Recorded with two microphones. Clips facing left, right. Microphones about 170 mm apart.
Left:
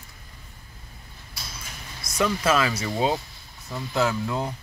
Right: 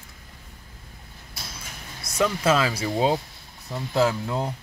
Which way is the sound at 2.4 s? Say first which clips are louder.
Right 1 dB; 30° right (ahead or behind).